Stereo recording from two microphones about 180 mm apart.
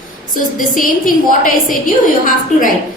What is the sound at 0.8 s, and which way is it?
A woman's voice, 50° left (ahead or behind).